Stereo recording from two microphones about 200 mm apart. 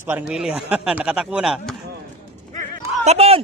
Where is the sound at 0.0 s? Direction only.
10° right (ahead or behind).